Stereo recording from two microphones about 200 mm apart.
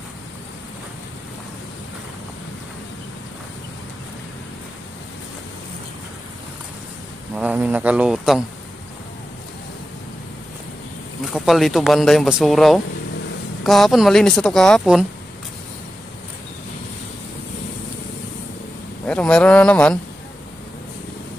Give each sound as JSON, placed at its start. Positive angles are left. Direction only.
{"t": 7.3, "sound": "a man's voice", "side_deg": -5}
{"t": 11.3, "sound": "speech", "side_deg": 0}
{"t": 19.0, "sound": "speech", "side_deg": 5}